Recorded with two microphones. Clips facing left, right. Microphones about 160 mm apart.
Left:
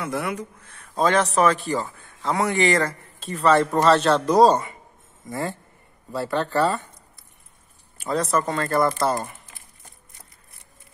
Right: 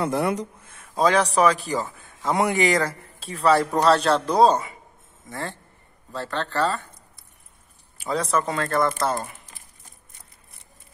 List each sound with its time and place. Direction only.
0.0 s speech: 35° right (ahead or behind)
0.7 s speech: centre (ahead or behind)
5.3 s speech: 15° left (ahead or behind)
8.0 s speech: centre (ahead or behind)